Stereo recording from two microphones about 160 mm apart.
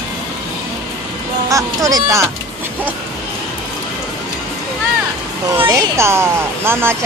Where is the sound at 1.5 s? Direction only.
20° right (ahead or behind).